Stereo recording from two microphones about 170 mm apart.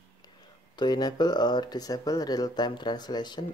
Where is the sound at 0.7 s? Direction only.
25° left (ahead or behind).